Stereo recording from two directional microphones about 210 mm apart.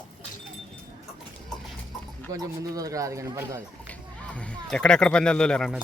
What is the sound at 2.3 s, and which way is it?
Speech, 15° right (ahead or behind).